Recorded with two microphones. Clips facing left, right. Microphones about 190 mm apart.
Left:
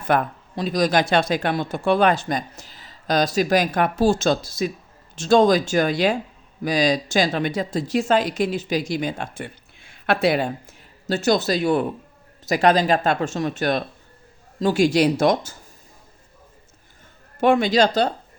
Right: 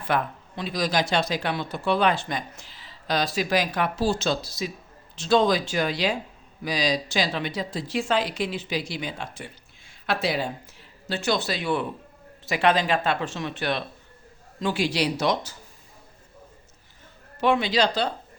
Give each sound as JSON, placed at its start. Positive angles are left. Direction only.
{"t": 0.0, "sound": "speech", "side_deg": 45}
{"t": 17.4, "sound": "speech", "side_deg": 45}